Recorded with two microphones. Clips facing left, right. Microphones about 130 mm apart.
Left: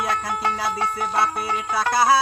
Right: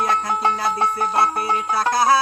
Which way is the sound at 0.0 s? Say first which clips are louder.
Right 4 dB; 5° left (ahead or behind).